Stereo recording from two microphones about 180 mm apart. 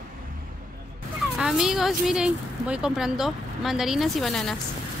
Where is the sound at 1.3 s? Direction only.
5° right (ahead or behind).